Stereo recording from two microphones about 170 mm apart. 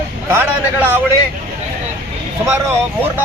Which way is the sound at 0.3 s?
15° right (ahead or behind).